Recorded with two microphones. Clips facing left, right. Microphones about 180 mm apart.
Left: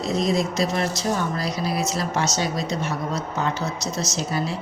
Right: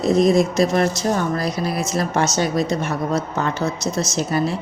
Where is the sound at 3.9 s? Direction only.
55° right (ahead or behind).